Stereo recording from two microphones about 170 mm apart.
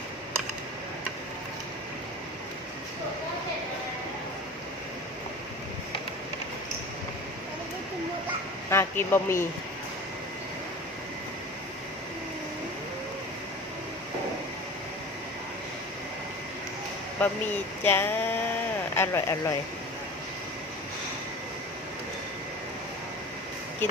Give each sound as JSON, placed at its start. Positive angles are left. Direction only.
{"t": 8.7, "sound": "a man's voice", "side_deg": 15}
{"t": 17.2, "sound": "a man's voice", "side_deg": 10}
{"t": 17.8, "sound": "a sound", "side_deg": 10}
{"t": 18.9, "sound": "a man's voice", "side_deg": 15}